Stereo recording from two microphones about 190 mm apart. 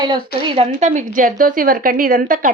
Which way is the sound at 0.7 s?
40° right (ahead or behind).